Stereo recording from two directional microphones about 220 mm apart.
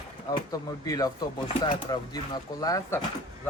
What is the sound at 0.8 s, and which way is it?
Speech, 15° left (ahead or behind).